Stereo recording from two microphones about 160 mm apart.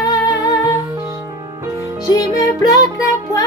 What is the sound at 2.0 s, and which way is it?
Music, 25° left (ahead or behind).